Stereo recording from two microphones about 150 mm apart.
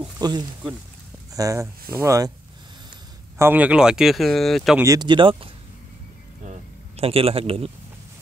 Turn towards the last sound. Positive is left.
turn(degrees=-40)  # may be behind; listen again after turning